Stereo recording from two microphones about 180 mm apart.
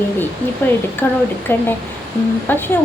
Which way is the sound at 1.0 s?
15° left (ahead or behind).